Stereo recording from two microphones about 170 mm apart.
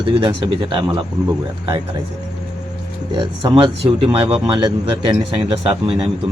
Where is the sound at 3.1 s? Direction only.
30° right (ahead or behind).